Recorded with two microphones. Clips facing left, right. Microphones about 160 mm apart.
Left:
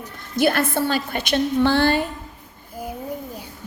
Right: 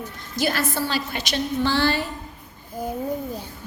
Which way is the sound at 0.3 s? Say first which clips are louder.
Left 5 dB; 55° left (ahead or behind).